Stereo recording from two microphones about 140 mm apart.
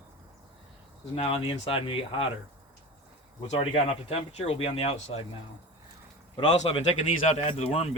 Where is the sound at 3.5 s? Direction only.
45° left (ahead or behind).